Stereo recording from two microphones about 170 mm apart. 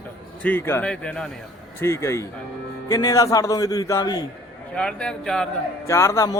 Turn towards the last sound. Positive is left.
turn(degrees=20)  # may be behind; listen again after turning